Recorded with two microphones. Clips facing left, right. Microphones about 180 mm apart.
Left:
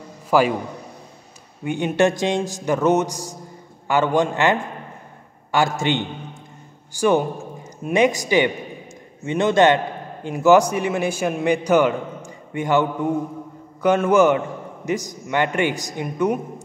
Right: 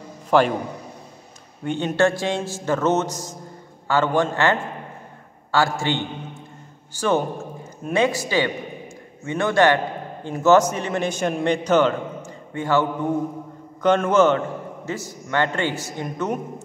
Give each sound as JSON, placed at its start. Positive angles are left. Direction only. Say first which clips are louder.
{"t": 0.3, "sound": "a man's voice", "louder": "even", "side_deg": 5}
{"t": 1.6, "sound": "a man's voice", "louder": "left 1 dB", "side_deg": 10}
{"t": 13.8, "sound": "a man's voice", "louder": "left 1 dB", "side_deg": 10}